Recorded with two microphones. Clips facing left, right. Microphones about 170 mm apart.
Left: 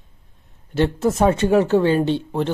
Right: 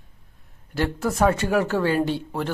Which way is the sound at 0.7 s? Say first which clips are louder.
Left 5 dB; 20° left (ahead or behind).